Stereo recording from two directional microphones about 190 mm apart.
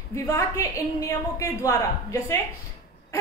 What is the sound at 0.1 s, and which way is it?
A woman's voice, 15° left (ahead or behind).